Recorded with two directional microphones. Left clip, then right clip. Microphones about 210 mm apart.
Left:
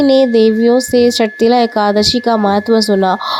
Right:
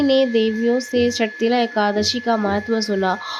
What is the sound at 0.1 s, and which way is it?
Speech, 30° left (ahead or behind).